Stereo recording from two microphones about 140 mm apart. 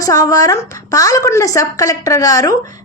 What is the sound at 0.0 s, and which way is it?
A woman's voice, 25° left (ahead or behind).